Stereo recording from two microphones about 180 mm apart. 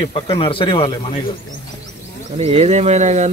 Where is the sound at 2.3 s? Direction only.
35° right (ahead or behind).